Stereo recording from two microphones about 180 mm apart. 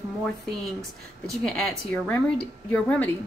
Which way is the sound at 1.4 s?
5° left (ahead or behind).